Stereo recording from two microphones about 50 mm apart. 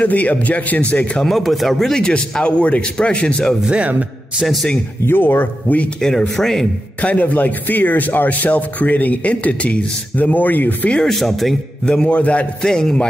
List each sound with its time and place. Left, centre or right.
0.0 s speech: left
1.2 s a man's voice: centre
5.0 s speech: left
5.9 s a man's voice: centre
7.0 s speech: left
11.1 s speech: centre
11.8 s a man's voice: left
12.6 s a man's voice: centre